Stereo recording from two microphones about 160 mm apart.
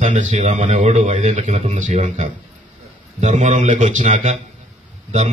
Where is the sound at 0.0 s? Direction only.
50° right (ahead or behind).